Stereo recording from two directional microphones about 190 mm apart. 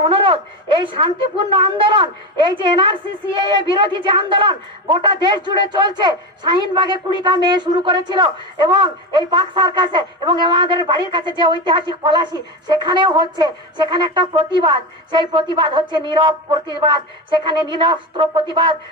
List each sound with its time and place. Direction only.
0.1 s a man's voice: 25° right (ahead or behind)